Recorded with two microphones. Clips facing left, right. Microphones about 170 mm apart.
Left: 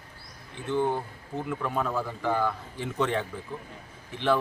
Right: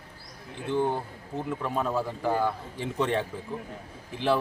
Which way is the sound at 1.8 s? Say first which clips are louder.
Right 2 dB; 25° right (ahead or behind).